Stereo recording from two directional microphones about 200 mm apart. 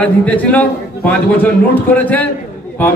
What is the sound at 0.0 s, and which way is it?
A man's voice, 5° left (ahead or behind).